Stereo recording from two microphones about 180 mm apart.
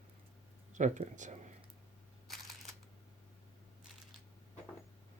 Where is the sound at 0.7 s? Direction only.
45° right (ahead or behind).